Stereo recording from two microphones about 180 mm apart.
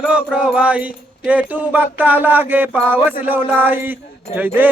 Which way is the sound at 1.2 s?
10° right (ahead or behind).